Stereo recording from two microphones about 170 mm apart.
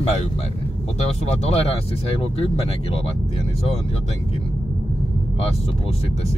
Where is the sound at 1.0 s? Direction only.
40° left (ahead or behind).